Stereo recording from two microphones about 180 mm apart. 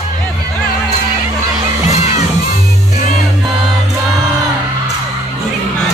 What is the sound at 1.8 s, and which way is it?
Children shouting, 40° left (ahead or behind).